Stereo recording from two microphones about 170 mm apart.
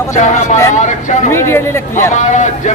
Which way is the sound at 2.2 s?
45° left (ahead or behind).